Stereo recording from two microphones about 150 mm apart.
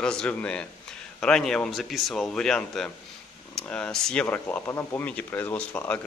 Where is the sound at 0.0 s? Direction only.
5° left (ahead or behind).